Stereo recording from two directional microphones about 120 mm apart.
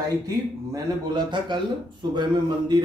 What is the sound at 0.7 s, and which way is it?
A man's voice, 35° right (ahead or behind).